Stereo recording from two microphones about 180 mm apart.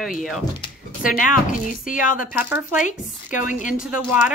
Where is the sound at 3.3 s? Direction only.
45° left (ahead or behind).